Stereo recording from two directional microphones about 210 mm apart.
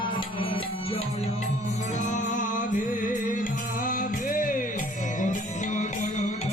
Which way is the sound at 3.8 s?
40° left (ahead or behind).